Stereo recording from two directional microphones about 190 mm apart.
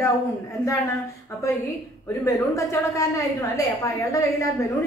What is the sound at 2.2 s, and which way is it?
A woman's voice, 15° left (ahead or behind).